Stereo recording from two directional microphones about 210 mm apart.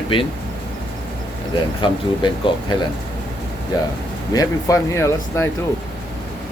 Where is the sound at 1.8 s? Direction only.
20° left (ahead or behind).